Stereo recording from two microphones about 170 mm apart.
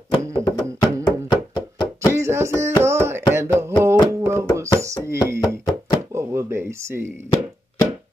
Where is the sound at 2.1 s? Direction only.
15° right (ahead or behind).